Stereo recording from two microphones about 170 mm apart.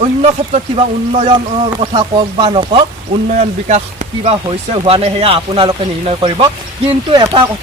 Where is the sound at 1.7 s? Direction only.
25° right (ahead or behind).